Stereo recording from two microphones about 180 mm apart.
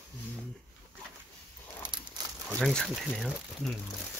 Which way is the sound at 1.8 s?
25° right (ahead or behind).